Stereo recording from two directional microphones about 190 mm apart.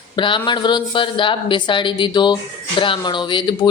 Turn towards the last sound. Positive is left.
turn(degrees=25)  # may be behind; listen again after turning